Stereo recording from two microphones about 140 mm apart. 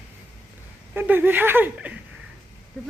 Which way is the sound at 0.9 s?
15° right (ahead or behind).